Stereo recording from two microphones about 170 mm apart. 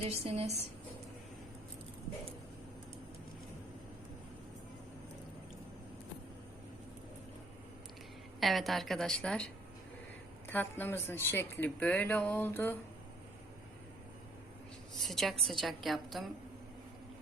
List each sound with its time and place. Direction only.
0.0 s a woman's voice: 35° right (ahead or behind)
8.4 s a woman's voice: centre (ahead or behind)
10.5 s speech: 10° left (ahead or behind)
14.9 s a woman's voice: centre (ahead or behind)